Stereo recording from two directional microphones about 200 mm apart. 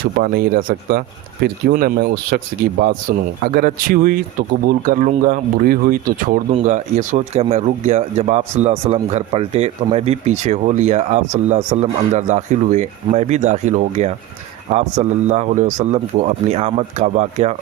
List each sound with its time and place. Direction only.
0.2 s speech: 45° right (ahead or behind)